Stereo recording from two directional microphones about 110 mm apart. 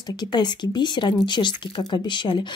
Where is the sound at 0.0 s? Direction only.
40° left (ahead or behind).